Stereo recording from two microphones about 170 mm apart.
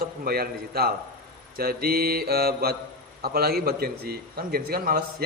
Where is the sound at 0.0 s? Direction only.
65° right (ahead or behind).